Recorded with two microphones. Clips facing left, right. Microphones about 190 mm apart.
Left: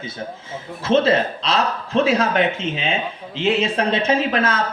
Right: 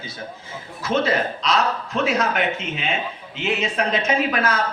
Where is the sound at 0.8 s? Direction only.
25° left (ahead or behind).